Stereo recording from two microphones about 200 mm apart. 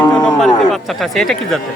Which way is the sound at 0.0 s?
5° left (ahead or behind).